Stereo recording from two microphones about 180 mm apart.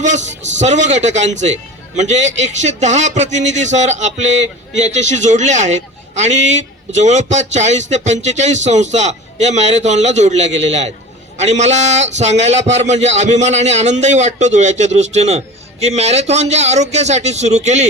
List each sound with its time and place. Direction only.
0.6 s a man's voice: 40° right (ahead or behind)